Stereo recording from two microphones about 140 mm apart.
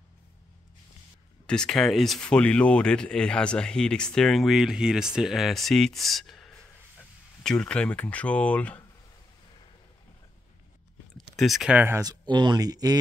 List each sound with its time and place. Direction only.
1.4 s speech: 5° left (ahead or behind)
11.1 s speech: centre (ahead or behind)
12.0 s speech: 30° right (ahead or behind)